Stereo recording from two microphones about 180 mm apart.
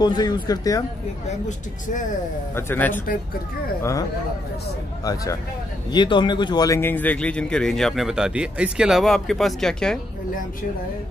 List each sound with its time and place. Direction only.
0.0 s speech: 20° left (ahead or behind)
2.5 s speech: 10° left (ahead or behind)
5.0 s speech: 20° left (ahead or behind); by 9.9 s 5° left (ahead or behind)